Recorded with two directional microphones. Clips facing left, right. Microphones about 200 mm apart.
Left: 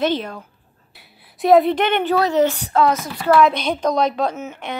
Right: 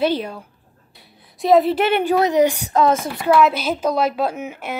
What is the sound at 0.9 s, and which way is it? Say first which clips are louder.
A woman's voice: even; centre (ahead or behind).